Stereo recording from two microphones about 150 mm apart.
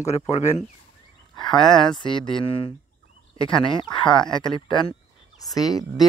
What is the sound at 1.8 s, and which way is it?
Speech, 30° left (ahead or behind).